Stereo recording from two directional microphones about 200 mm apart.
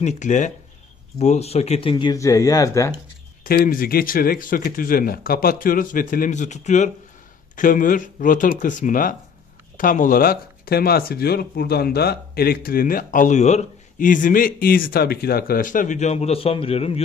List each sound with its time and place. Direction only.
0.0 s speech: 40° left (ahead or behind); by 2.9 s 15° left (ahead or behind)
3.4 s speech: 45° left (ahead or behind); by 17.0 s 30° left (ahead or behind)